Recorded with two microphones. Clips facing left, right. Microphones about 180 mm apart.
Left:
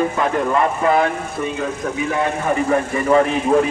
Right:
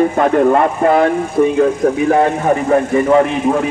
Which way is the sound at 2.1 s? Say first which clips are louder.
Right 7 dB; 50° right (ahead or behind).